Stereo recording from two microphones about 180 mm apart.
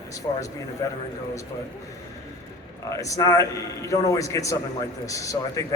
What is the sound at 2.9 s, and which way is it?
A man's voice, 20° left (ahead or behind).